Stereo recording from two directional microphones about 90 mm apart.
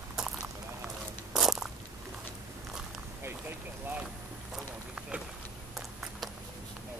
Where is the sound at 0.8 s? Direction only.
5° right (ahead or behind).